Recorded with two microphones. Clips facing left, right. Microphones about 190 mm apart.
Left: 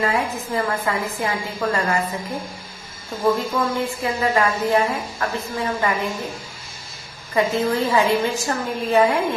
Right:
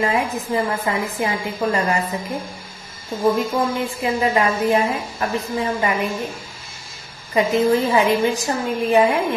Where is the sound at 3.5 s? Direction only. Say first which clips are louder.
Right 1 dB; 20° right (ahead or behind).